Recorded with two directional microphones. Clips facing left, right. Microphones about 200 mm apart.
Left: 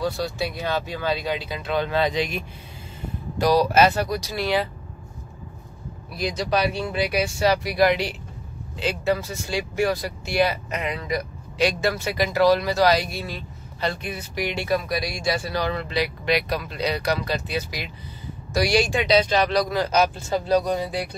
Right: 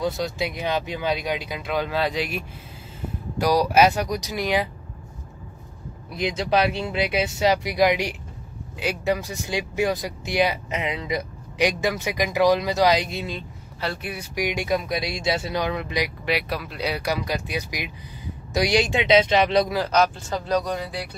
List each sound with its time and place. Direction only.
0.0 s speech: 20° right (ahead or behind)
6.1 s speech: 25° right (ahead or behind)
13.7 s speech: 5° right (ahead or behind); by 19.7 s 25° right (ahead or behind)
19.9 s speech: 10° left (ahead or behind)